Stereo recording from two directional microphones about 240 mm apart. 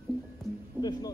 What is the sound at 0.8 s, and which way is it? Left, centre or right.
Music, centre.